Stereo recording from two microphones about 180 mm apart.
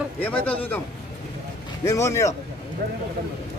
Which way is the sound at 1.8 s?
15° left (ahead or behind).